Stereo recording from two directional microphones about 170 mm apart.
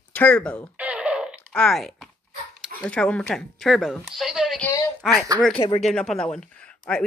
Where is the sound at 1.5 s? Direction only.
5° left (ahead or behind).